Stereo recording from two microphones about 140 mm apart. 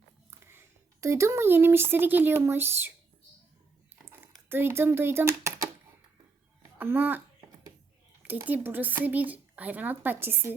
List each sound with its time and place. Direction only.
0.3 s a sound: 20° right (ahead or behind)
1.0 s speech: 20° right (ahead or behind)
4.0 s speech: 15° right (ahead or behind)
6.7 s a child's voice: 15° right (ahead or behind)
8.4 s speech: 15° right (ahead or behind)